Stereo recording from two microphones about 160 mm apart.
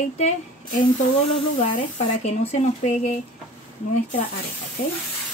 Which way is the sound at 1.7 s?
40° left (ahead or behind).